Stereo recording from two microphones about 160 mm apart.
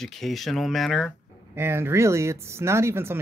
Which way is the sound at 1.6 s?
15° right (ahead or behind).